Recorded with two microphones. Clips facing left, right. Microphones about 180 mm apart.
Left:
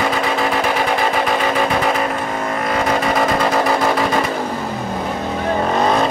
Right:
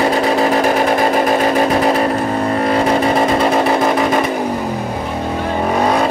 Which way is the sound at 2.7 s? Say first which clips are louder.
Right 3 dB; 30° right (ahead or behind).